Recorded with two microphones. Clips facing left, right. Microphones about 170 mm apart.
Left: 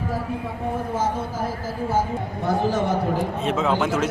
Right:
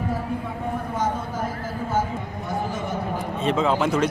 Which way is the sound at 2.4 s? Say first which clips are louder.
Left 8 dB; 80° left.